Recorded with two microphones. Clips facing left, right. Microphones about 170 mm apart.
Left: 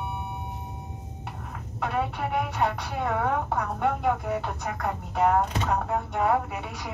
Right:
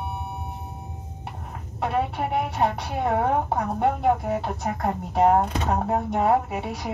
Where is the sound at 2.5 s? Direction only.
35° right (ahead or behind).